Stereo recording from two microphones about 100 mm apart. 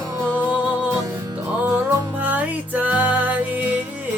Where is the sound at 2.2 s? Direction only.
15° right (ahead or behind).